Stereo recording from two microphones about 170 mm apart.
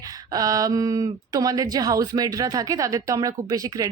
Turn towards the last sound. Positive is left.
turn(degrees=-20)  # may be behind; listen again after turning